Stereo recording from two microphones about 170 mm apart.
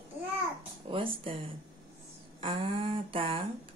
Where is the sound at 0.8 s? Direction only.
30° right (ahead or behind).